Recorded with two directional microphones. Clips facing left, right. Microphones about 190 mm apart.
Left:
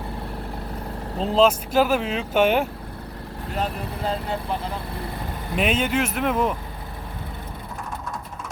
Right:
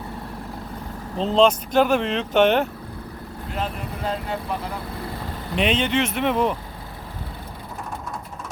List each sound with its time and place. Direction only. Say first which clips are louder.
1.2 s speech: right 1 dB; 5° left (ahead or behind)
3.6 s speech: left 1 dB; 30° left (ahead or behind)
5.5 s speech: right 1 dB; 5° left (ahead or behind)